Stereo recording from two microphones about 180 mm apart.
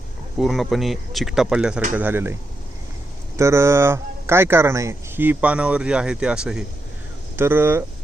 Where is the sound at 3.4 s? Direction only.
15° right (ahead or behind).